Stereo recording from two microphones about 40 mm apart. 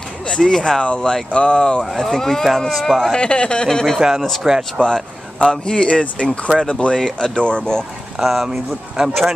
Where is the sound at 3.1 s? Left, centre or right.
Left; by 4.4 s centre.